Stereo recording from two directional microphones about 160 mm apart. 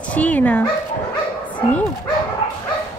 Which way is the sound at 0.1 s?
10° left (ahead or behind).